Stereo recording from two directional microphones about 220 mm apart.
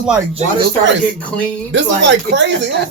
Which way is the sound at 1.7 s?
55° right (ahead or behind).